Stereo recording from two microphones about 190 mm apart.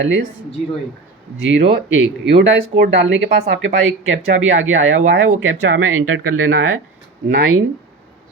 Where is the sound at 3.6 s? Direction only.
90° right.